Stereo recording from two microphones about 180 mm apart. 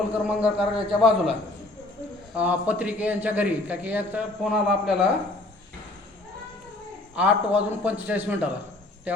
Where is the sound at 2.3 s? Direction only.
10° right (ahead or behind).